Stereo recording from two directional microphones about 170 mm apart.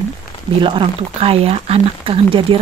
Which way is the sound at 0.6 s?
30° right (ahead or behind).